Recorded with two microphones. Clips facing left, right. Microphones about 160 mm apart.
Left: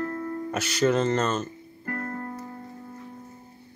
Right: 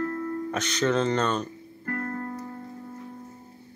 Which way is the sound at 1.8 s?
15° left (ahead or behind).